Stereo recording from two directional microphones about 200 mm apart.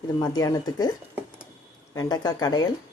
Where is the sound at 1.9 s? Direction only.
20° left (ahead or behind).